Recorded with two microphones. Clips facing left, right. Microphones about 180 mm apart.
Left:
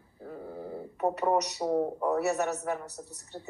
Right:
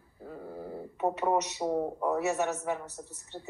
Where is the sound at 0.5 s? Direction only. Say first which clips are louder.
Even; 25° left (ahead or behind).